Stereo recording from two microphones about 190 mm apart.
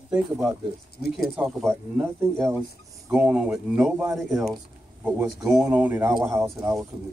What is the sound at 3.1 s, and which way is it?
A man's voice, 10° right (ahead or behind).